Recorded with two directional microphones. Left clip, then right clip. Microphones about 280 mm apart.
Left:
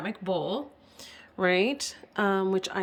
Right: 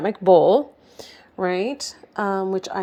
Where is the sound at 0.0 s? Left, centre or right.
Centre.